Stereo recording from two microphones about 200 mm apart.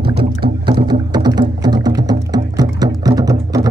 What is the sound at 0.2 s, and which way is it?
Music, 25° right (ahead or behind).